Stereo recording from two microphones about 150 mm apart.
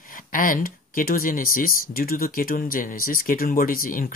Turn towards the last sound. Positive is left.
turn(degrees=70)  # may be behind; listen again after turning